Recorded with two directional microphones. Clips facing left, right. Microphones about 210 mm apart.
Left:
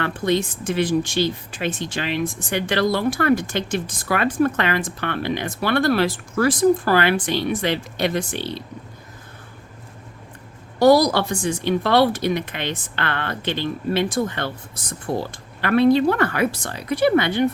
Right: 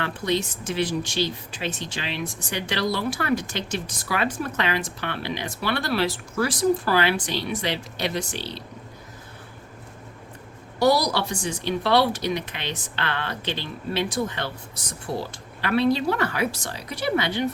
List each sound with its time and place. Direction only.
0.0 s speech: 50° left (ahead or behind)
10.8 s speech: 50° left (ahead or behind)